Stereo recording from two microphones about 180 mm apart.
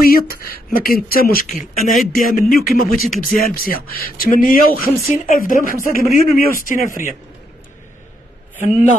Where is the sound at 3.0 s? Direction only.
Centre (ahead or behind).